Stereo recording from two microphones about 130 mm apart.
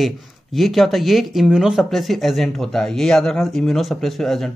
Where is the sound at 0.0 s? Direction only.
Centre (ahead or behind).